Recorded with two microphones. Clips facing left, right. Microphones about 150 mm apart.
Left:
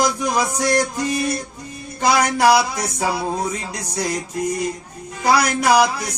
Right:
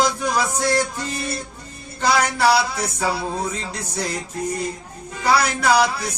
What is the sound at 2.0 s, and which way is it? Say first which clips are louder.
A man's voice: left 2 dB; 15° left (ahead or behind).